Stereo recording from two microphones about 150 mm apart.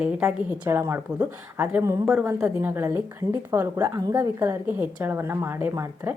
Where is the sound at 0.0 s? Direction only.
10° right (ahead or behind).